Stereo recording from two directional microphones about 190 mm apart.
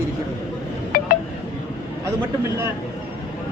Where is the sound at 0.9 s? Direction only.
50° left (ahead or behind).